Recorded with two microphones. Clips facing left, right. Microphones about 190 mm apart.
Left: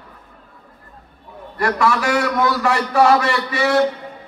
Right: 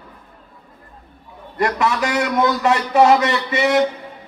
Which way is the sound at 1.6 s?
20° right (ahead or behind).